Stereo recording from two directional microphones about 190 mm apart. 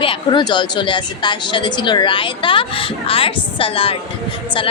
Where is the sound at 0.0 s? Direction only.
25° left (ahead or behind).